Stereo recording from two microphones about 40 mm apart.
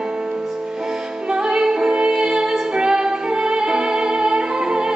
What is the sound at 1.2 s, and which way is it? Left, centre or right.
Music, centre.